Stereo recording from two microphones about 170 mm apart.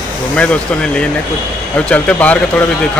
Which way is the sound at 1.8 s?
5° left (ahead or behind).